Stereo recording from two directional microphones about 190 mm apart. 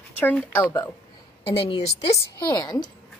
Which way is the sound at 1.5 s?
30° left (ahead or behind).